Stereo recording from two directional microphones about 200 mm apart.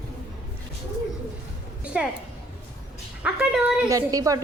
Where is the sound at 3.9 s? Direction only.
15° right (ahead or behind).